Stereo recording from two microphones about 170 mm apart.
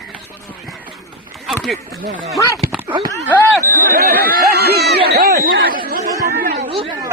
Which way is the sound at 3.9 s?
65° right (ahead or behind).